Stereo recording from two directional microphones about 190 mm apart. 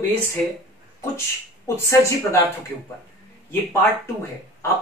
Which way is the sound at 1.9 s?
15° left (ahead or behind).